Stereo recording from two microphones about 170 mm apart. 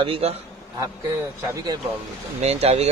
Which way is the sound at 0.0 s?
35° right (ahead or behind).